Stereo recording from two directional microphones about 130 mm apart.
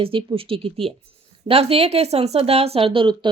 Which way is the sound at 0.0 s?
45° right (ahead or behind).